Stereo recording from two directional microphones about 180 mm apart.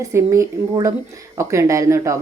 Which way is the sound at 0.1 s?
15° right (ahead or behind).